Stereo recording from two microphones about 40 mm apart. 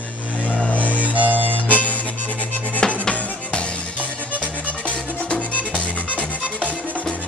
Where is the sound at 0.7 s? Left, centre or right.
Left.